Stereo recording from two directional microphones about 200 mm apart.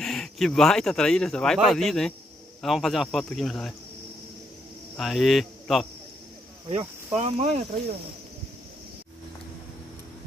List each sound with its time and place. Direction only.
0.0 s speech: centre (ahead or behind)
4.9 s speech: centre (ahead or behind)
6.7 s speech: 30° right (ahead or behind)